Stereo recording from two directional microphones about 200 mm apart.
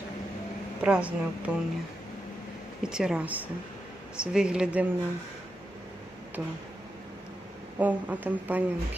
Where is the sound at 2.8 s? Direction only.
5° right (ahead or behind).